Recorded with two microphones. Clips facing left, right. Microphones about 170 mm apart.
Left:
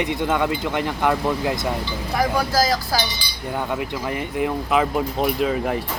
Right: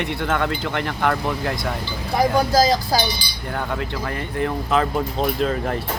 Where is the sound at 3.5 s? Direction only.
15° left (ahead or behind).